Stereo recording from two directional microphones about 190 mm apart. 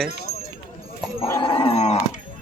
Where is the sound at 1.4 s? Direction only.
30° left (ahead or behind).